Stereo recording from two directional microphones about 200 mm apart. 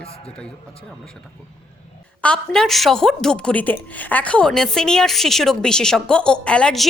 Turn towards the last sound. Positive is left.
turn(degrees=5)  # may be behind; listen again after turning